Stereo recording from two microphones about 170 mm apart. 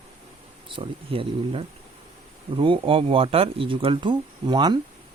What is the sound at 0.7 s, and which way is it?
Speech, 30° right (ahead or behind).